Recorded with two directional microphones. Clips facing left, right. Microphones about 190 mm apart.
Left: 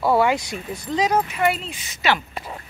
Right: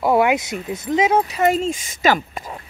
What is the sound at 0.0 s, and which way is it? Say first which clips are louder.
Speech: right 2 dB; 20° right (ahead or behind).